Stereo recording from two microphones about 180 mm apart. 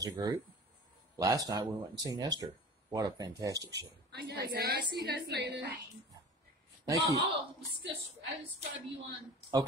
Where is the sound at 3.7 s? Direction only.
70° right (ahead or behind).